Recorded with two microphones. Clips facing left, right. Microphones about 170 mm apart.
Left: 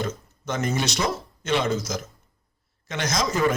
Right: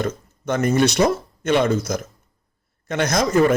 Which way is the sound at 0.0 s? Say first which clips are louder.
Right 5 dB; 60° right (ahead or behind).